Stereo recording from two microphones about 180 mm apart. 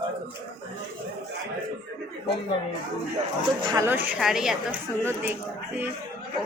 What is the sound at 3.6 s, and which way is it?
Speech, 25° right (ahead or behind).